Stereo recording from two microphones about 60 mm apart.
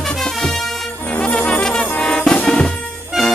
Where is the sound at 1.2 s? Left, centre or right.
Centre.